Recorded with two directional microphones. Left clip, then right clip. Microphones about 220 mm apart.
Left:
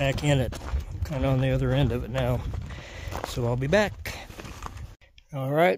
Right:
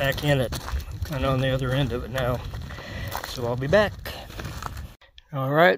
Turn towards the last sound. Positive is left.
turn(degrees=0)  # may be behind; listen again after turning